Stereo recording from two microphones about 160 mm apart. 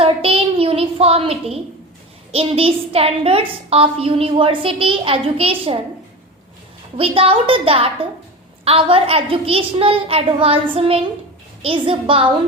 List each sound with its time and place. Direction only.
0.0 s a sound: 35° right (ahead or behind)
2.3 s a woman's voice: 35° right (ahead or behind)
6.9 s a woman's voice: 35° right (ahead or behind)